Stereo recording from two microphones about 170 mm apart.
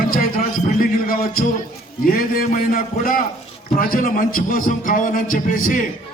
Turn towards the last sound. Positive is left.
turn(degrees=55)  # may be behind; listen again after turning